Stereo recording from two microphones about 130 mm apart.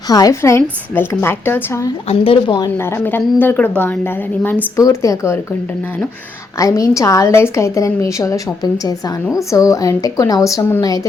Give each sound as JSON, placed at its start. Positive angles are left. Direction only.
{"t": 0.1, "sound": "a woman's voice", "side_deg": 25}
{"t": 2.0, "sound": "speech", "side_deg": 45}
{"t": 2.7, "sound": "a woman's voice", "side_deg": 20}
{"t": 6.6, "sound": "a woman's voice", "side_deg": 25}